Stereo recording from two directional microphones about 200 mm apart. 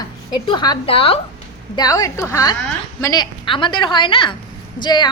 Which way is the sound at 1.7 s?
20° left (ahead or behind).